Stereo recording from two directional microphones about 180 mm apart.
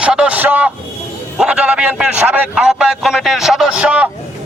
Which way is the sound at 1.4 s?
5° right (ahead or behind).